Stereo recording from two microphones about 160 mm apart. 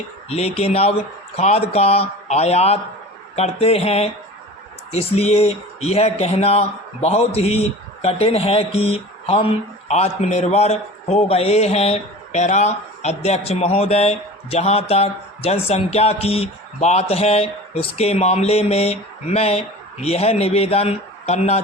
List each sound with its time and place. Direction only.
0.3 s a man's voice: 40° left (ahead or behind)